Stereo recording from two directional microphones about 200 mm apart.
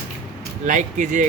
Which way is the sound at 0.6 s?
40° right (ahead or behind).